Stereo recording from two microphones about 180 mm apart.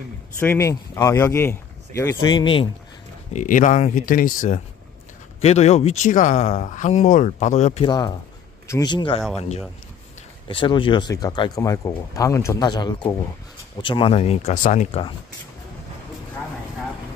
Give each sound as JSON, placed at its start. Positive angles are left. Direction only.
{"t": 0.4, "sound": "speech", "side_deg": 15}
{"t": 3.3, "sound": "speech", "side_deg": 45}
{"t": 7.8, "sound": "speech", "side_deg": 25}
{"t": 10.5, "sound": "speech", "side_deg": 30}